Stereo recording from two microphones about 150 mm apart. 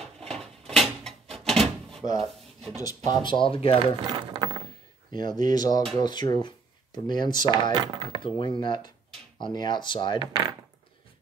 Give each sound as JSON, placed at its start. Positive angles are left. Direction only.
{"t": 0.0, "sound": "a sound", "side_deg": 5}
{"t": 2.1, "sound": "rub", "side_deg": 0}
{"t": 2.8, "sound": "speech", "side_deg": 25}
{"t": 4.0, "sound": "a sound", "side_deg": -30}
{"t": 5.1, "sound": "speech", "side_deg": 30}
{"t": 7.7, "sound": "speech", "side_deg": -30}
{"t": 8.2, "sound": "speech", "side_deg": 35}